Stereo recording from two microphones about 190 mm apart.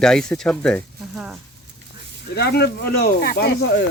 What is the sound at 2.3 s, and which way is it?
Speech, 60° left (ahead or behind).